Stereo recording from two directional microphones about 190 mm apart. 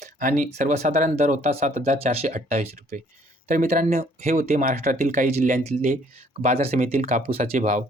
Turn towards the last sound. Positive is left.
turn(degrees=-35)  # may be behind; listen again after turning